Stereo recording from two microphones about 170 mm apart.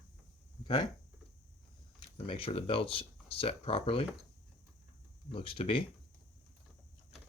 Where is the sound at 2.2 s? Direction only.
35° left (ahead or behind).